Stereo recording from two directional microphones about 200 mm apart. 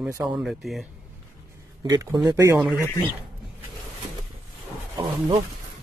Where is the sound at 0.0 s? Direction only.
5° right (ahead or behind).